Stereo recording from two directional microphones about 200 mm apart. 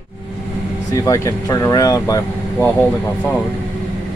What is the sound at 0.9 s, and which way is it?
Speech, 15° left (ahead or behind).